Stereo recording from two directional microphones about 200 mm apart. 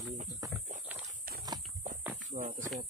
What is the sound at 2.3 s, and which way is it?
Speech, 40° right (ahead or behind).